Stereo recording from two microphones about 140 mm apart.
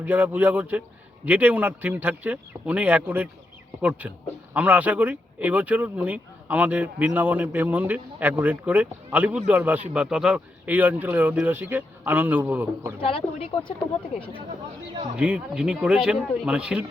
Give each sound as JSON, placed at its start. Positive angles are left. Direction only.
{"t": 0.0, "sound": "speech", "side_deg": -15}
{"t": 13.0, "sound": "speech", "side_deg": 40}
{"t": 15.1, "sound": "speech", "side_deg": -5}